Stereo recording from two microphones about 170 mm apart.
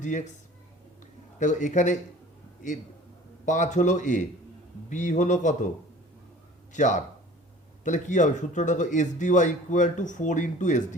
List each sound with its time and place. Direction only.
0.0 s speech: 45° left (ahead or behind)
1.4 s speech: 45° left (ahead or behind)
3.4 s speech: 45° left (ahead or behind)
6.7 s speech: 45° left (ahead or behind)